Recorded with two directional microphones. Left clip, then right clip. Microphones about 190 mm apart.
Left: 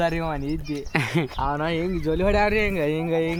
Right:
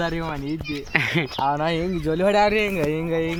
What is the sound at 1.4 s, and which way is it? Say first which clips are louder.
Speech: right 3 dB; 40° right (ahead or behind).